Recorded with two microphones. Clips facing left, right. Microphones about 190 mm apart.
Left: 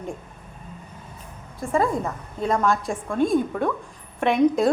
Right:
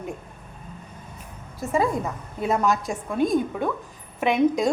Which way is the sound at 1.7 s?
Centre (ahead or behind).